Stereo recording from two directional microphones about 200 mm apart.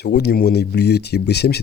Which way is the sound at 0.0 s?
55° left (ahead or behind).